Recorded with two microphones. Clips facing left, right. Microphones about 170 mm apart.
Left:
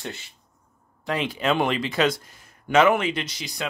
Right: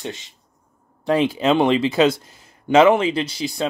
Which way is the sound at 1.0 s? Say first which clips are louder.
Right 7 dB; 30° right (ahead or behind).